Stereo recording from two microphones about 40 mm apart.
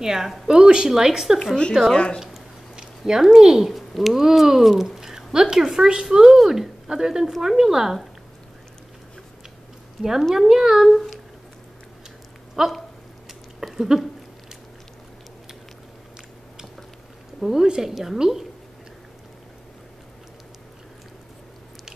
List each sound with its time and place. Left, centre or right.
0.0 s speech: centre
1.7 s speech: centre
3.1 s speech: centre
3.7 s speech: centre
6.9 s speech: centre
10.3 s speech: centre
10.9 s humming: centre
12.6 s speech: centre
13.7 s speech: centre
17.4 s speech: centre